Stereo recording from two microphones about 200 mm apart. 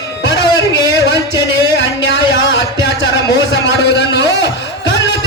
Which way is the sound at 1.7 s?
65° left (ahead or behind).